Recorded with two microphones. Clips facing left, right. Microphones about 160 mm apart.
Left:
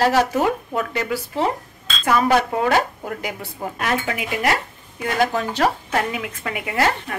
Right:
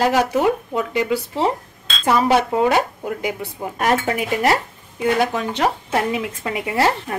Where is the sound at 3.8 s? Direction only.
40° right (ahead or behind).